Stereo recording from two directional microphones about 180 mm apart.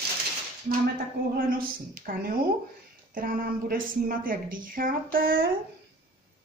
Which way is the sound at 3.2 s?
50° right (ahead or behind).